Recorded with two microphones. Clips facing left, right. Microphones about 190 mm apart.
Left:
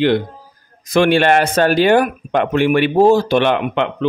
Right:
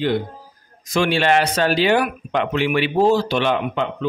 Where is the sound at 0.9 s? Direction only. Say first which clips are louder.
Left 5 dB; 55° left (ahead or behind).